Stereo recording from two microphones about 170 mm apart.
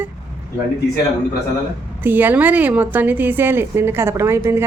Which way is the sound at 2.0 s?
10° right (ahead or behind).